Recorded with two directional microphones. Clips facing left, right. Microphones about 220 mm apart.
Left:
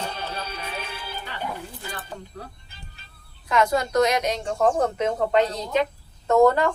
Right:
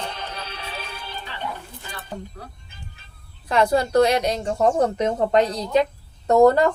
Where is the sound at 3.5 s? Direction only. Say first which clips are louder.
Right 3 dB; 30° right (ahead or behind).